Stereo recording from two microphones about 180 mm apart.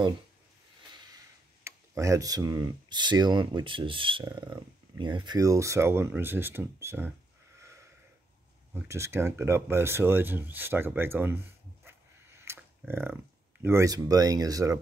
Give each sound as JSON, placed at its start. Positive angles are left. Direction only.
{"t": 0.9, "sound": "speech", "side_deg": -20}
{"t": 8.7, "sound": "speech", "side_deg": -15}
{"t": 11.8, "sound": "a sound", "side_deg": -15}